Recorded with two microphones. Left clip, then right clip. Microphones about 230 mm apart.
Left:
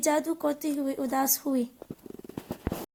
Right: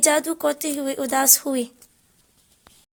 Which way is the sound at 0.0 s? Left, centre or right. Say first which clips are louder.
Right 6 dB; right.